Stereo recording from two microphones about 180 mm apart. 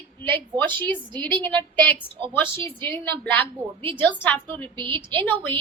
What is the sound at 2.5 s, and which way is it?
Speech, 30° right (ahead or behind).